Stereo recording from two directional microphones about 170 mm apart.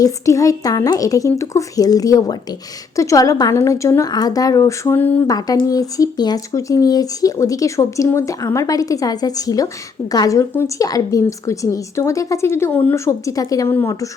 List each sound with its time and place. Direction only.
0.0 s speech: 20° left (ahead or behind)